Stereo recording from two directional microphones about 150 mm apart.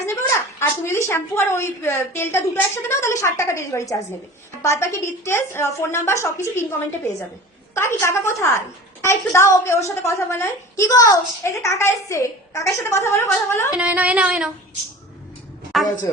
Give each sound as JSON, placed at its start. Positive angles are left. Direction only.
{"t": 0.0, "sound": "a sound", "side_deg": 15}
{"t": 1.0, "sound": "a woman's voice", "side_deg": 15}
{"t": 7.7, "sound": "a woman's voice", "side_deg": 15}
{"t": 13.7, "sound": "speech", "side_deg": -10}